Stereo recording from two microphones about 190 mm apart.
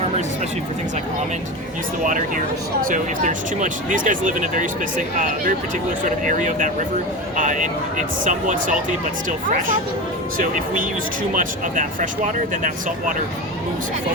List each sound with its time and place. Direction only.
2.0 s speech: 45° right (ahead or behind)
11.3 s speech: 45° right (ahead or behind)